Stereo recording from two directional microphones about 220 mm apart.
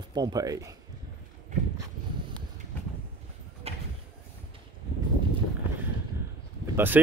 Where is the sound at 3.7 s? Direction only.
30° right (ahead or behind).